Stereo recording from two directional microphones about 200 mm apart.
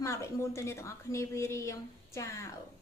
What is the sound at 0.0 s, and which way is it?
A woman's voice, 15° left (ahead or behind).